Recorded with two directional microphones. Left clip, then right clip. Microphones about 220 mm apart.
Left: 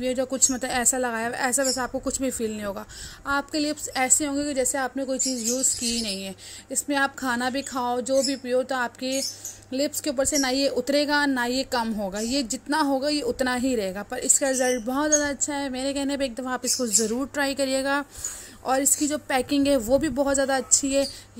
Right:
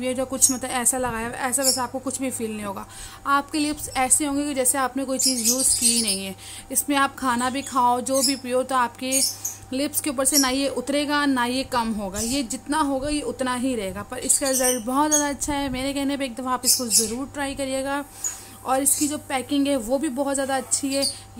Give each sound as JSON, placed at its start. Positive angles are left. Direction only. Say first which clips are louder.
{"t": 0.0, "sound": "a woman's voice", "louder": "right 1 dB", "side_deg": 15}